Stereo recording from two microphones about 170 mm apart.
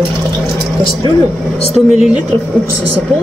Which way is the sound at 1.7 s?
5° right (ahead or behind).